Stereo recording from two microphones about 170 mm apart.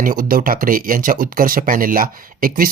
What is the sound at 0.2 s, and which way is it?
Speech, 55° right (ahead or behind).